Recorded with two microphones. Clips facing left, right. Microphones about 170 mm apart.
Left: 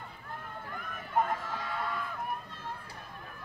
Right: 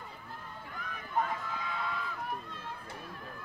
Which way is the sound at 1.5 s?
50° left (ahead or behind).